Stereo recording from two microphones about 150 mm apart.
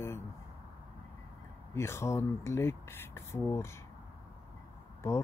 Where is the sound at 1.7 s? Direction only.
20° left (ahead or behind).